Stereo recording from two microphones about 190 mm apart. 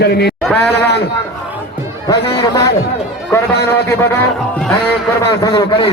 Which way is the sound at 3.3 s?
15° left (ahead or behind).